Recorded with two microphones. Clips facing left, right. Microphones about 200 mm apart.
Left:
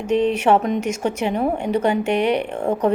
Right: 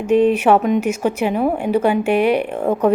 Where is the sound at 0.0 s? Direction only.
10° right (ahead or behind).